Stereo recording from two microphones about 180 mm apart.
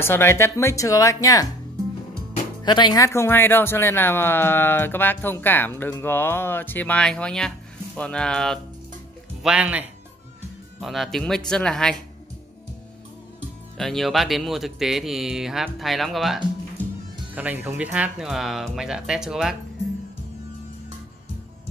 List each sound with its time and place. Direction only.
0.0 s speech: 15° left (ahead or behind)
2.6 s speech: 25° left (ahead or behind); by 12.0 s 5° left (ahead or behind)
13.7 s speech: centre (ahead or behind)